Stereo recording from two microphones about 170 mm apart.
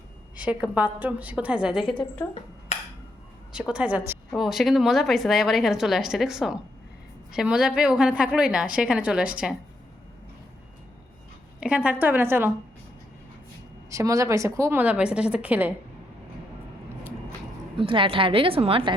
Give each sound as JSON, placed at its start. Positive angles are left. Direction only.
{"t": 0.3, "sound": "a woman's voice", "side_deg": -10}
{"t": 1.8, "sound": "a woman's voice", "side_deg": 30}
{"t": 3.5, "sound": "a woman's voice", "side_deg": -5}
{"t": 11.6, "sound": "a woman's voice", "side_deg": -10}
{"t": 13.9, "sound": "a woman's voice", "side_deg": -20}
{"t": 17.7, "sound": "a woman's voice", "side_deg": -30}